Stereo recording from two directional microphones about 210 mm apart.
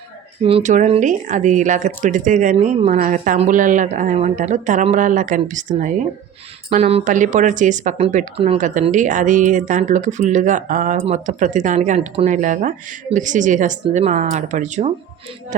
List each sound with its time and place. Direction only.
0.4 s speech: 30° right (ahead or behind)